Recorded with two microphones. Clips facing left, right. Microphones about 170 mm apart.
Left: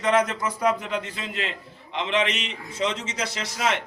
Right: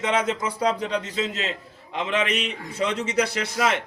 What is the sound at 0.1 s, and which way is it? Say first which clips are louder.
Speech: left 5 dB; 30° right (ahead or behind).